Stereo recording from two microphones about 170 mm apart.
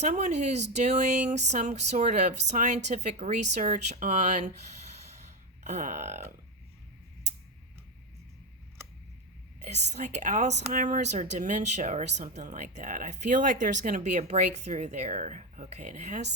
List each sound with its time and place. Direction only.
0.0 s a woman's voice: 40° right (ahead or behind)
4.9 s a sound: 40° right (ahead or behind)
5.6 s a woman's voice: 45° right (ahead or behind)
9.6 s a woman's voice: 40° right (ahead or behind)